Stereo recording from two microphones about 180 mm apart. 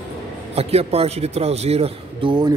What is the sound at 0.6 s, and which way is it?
A man's voice, 35° right (ahead or behind).